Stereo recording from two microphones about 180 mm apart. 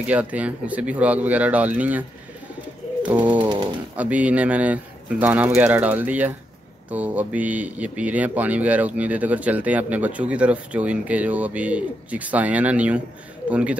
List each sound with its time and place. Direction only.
0.0 s speech: 5° right (ahead or behind)
3.0 s bird: 10° right (ahead or behind)
3.3 s bird: 25° right (ahead or behind)
3.9 s speech: 10° right (ahead or behind)